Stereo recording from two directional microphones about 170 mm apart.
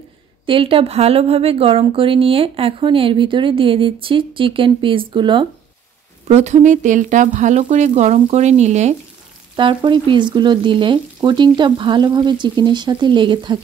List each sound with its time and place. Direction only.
0.5 s speech: 30° right (ahead or behind)
6.2 s speech: 40° right (ahead or behind)
9.6 s frying: 30° right (ahead or behind)